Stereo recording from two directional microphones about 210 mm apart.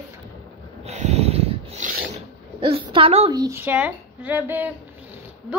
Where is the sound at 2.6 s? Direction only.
25° right (ahead or behind); by 4.7 s 10° right (ahead or behind).